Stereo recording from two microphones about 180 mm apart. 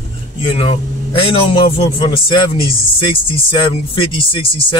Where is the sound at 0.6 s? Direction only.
30° left (ahead or behind).